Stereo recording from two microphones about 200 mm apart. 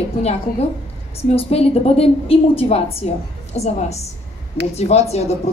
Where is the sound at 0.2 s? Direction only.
30° left (ahead or behind).